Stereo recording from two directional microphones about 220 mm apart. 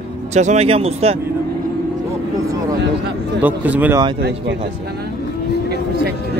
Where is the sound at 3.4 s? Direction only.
10° right (ahead or behind).